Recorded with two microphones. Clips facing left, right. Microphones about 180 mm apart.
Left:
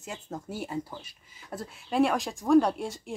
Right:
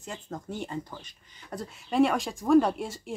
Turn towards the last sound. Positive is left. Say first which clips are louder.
# even
turn(degrees=0)  # may be behind; listen again after turning